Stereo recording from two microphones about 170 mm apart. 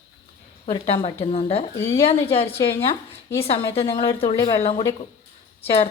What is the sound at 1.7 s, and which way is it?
Speech, 15° left (ahead or behind).